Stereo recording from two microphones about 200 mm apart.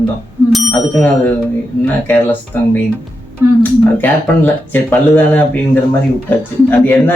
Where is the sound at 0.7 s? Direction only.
15° left (ahead or behind).